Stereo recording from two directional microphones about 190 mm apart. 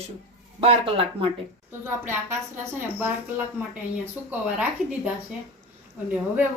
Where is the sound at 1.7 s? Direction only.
10° right (ahead or behind).